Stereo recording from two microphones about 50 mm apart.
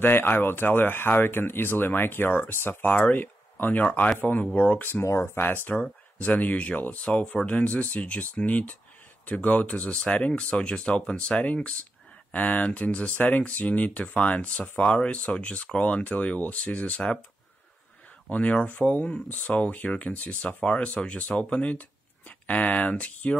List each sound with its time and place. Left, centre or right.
0.0 s speech: left
2.9 s speech: left
3.2 s a sound: left
3.8 s speech: left
4.2 s speech: left
5.0 s speech: left
5.8 s speech: left
13.1 s speech: left
18.3 s speech: left
18.8 s speech: centre
19.3 s speech: left